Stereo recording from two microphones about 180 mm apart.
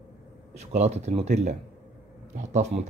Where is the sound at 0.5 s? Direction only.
40° right (ahead or behind).